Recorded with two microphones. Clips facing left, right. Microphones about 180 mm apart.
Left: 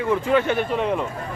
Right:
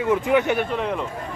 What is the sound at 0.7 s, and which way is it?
Speech, centre (ahead or behind).